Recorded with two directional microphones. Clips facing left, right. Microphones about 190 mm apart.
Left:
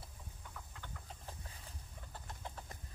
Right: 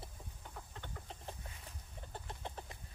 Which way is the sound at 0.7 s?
25° right (ahead or behind).